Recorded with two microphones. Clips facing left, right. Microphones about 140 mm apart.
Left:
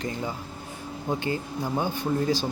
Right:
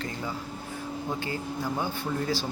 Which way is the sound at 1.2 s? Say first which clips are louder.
Left 3 dB; 20° left (ahead or behind).